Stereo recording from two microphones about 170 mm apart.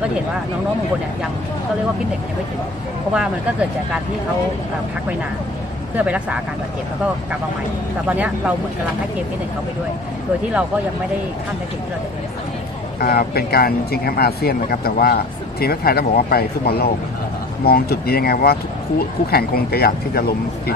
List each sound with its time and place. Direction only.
5.9 s speech: 5° right (ahead or behind)
8.1 s speech: 10° right (ahead or behind)
13.0 s speech: 65° left (ahead or behind)